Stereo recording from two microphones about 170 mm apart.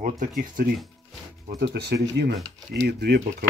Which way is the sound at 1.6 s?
75° right (ahead or behind).